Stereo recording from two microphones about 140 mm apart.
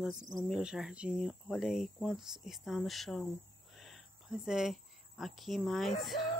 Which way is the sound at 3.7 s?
Centre (ahead or behind).